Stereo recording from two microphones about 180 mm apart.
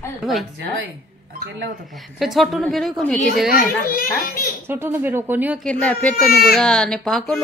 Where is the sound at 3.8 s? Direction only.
55° left (ahead or behind).